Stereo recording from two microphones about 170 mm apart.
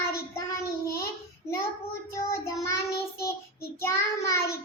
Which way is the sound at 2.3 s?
15° left (ahead or behind).